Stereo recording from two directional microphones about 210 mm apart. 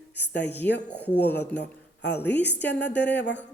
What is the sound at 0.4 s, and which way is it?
Speech, 10° left (ahead or behind).